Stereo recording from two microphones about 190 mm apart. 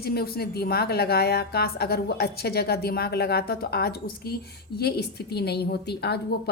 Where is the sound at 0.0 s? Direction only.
55° left (ahead or behind).